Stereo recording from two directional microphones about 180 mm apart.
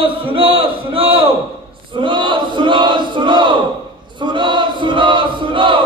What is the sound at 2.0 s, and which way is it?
Battle cry, 25° right (ahead or behind).